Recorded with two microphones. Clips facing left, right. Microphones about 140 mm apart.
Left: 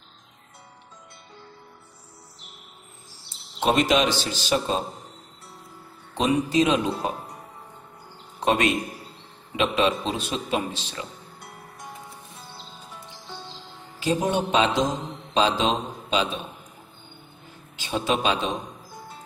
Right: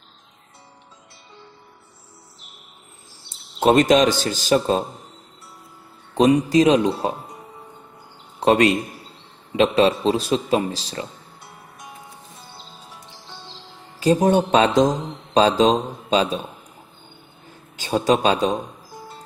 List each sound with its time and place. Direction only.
3.5 s a man's voice: 45° right (ahead or behind)
6.1 s speech: 40° right (ahead or behind)
8.4 s a man's voice: 35° right (ahead or behind)
13.9 s a man's voice: 40° right (ahead or behind)
17.8 s speech: 40° right (ahead or behind)